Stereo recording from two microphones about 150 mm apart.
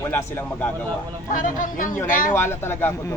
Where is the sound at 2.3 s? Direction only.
15° left (ahead or behind).